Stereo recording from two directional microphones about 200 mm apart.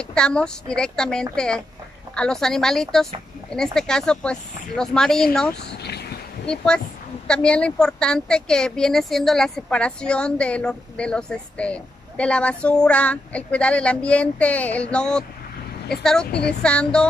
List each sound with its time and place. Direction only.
0.0 s a woman's voice: 5° left (ahead or behind)
5.8 s a sound: 55° left (ahead or behind)
6.4 s a woman's voice: 5° left (ahead or behind)